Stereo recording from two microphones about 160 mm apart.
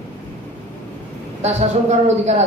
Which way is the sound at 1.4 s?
45° right (ahead or behind).